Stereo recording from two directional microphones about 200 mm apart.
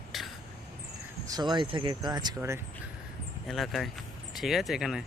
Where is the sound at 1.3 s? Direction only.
20° right (ahead or behind).